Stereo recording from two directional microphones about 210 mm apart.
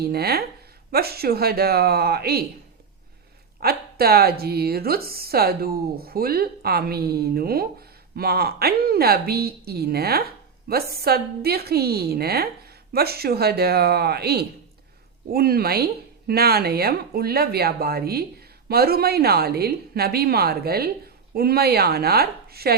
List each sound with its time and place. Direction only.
0.0 s a woman's voice: 50° right (ahead or behind)
3.6 s a woman's voice: 45° right (ahead or behind)